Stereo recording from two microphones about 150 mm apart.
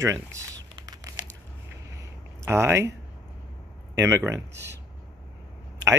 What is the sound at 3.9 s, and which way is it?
Speech, 20° right (ahead or behind).